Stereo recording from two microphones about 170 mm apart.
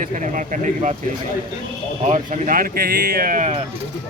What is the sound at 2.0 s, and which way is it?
Speech, 45° right (ahead or behind).